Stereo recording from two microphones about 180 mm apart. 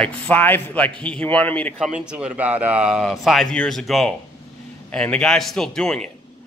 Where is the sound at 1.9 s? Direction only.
5° right (ahead or behind).